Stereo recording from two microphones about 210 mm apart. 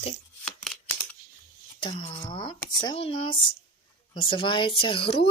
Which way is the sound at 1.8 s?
20° left (ahead or behind).